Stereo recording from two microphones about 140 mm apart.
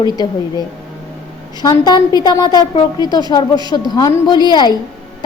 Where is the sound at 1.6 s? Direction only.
30° left (ahead or behind).